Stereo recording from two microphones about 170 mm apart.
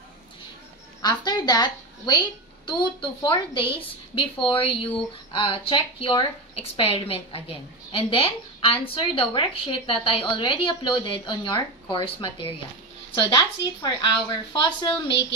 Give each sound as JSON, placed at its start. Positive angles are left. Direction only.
{"t": 1.0, "sound": "a woman's voice", "side_deg": 25}